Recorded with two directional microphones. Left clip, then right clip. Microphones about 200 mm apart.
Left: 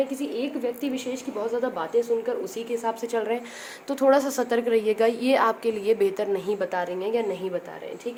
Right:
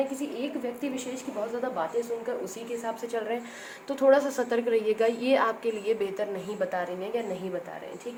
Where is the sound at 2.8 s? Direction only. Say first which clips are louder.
Left 4 dB; 55° left (ahead or behind).